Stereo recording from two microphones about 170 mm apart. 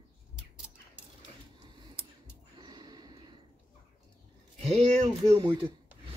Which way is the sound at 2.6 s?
25° right (ahead or behind).